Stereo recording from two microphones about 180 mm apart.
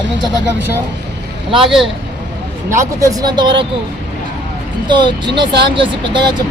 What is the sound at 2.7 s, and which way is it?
Speech, 15° right (ahead or behind).